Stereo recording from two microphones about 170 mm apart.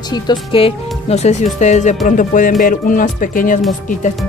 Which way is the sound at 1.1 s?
40° left (ahead or behind).